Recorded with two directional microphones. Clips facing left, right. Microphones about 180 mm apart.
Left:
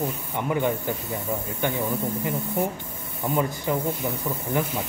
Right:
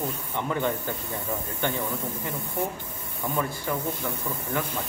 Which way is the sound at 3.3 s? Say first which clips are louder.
Left 4 dB; 20° left (ahead or behind).